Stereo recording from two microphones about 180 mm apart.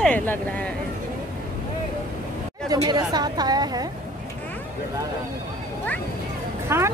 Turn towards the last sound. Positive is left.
turn(degrees=-15)  # may be behind; listen again after turning